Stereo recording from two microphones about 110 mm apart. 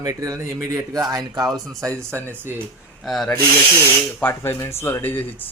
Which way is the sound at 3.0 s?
Centre (ahead or behind).